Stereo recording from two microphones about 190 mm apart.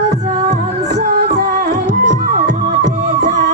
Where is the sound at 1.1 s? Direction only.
55° right (ahead or behind).